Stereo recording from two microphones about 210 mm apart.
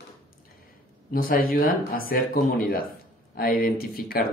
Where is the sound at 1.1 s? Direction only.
45° left (ahead or behind).